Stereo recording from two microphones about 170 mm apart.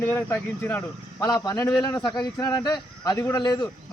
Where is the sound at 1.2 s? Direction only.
20° left (ahead or behind).